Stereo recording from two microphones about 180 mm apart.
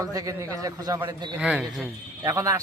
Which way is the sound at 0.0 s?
20° right (ahead or behind).